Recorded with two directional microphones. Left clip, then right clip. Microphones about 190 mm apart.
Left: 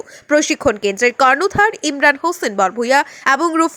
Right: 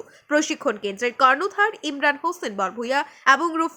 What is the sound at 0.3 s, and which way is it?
Speech, 30° left (ahead or behind).